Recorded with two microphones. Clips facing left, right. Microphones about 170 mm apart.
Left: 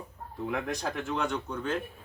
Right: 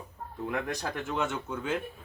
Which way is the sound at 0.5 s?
Centre (ahead or behind).